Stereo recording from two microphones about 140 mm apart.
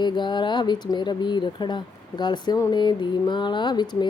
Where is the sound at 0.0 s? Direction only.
35° left (ahead or behind).